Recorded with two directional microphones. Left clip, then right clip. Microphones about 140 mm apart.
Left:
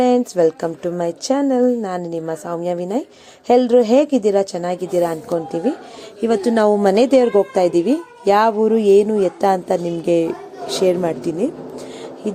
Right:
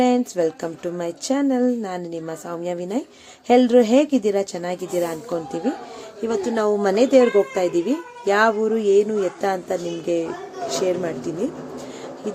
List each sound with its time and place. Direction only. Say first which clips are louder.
0.0 s a woman's voice: left 5 dB; 20° left (ahead or behind)
6.2 s a woman's voice: left 6 dB; 40° left (ahead or behind)